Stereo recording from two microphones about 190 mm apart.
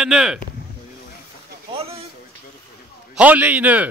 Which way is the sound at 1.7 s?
30° right (ahead or behind).